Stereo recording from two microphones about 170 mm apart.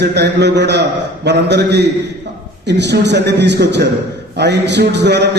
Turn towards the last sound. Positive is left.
turn(degrees=-85)